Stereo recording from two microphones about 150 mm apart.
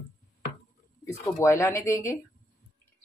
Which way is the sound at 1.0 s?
20° left (ahead or behind).